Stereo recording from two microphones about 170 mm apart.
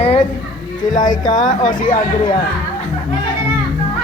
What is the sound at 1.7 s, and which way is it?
Speech, 55° left (ahead or behind).